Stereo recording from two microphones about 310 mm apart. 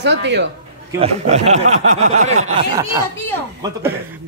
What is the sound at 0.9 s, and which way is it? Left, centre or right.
Speech, right.